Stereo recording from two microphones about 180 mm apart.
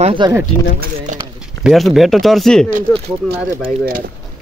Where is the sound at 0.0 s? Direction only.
30° right (ahead or behind).